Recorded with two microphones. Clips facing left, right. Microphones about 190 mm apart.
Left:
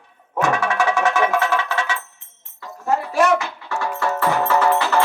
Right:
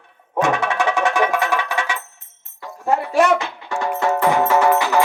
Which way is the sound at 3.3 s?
15° right (ahead or behind).